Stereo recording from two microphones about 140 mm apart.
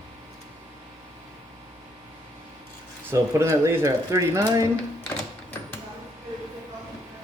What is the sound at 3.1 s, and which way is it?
Speech, 20° right (ahead or behind).